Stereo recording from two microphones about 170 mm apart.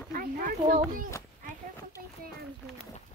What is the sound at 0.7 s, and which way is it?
Speech, 55° right (ahead or behind).